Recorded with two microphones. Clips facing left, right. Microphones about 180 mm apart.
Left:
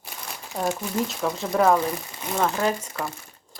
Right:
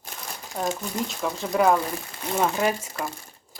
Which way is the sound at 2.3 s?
10° right (ahead or behind).